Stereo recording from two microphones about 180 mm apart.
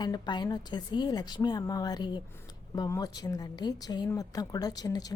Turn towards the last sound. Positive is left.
turn(degrees=20)  # may be behind; listen again after turning